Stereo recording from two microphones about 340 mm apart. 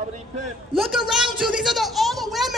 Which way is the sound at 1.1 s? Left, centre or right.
Centre.